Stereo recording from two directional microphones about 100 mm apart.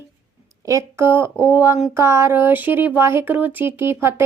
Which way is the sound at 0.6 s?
30° right (ahead or behind).